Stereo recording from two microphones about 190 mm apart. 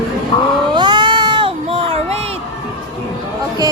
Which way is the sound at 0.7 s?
25° right (ahead or behind).